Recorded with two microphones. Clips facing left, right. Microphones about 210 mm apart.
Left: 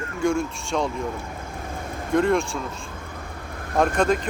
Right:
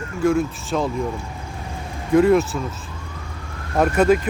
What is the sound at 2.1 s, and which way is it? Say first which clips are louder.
Speech: right 6 dB; 5° right (ahead or behind).